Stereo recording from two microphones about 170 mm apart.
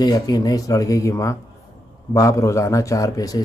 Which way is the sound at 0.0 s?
25° left (ahead or behind).